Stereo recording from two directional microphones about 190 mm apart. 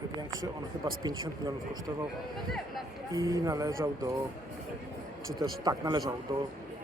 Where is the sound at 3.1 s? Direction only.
20° right (ahead or behind).